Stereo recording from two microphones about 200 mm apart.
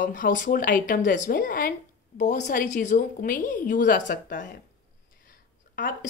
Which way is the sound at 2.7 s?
40° left (ahead or behind).